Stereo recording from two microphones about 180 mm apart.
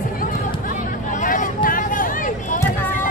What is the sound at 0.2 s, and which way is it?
Vehicle, 50° left (ahead or behind).